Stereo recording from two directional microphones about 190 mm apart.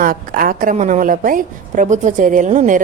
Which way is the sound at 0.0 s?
50° right (ahead or behind).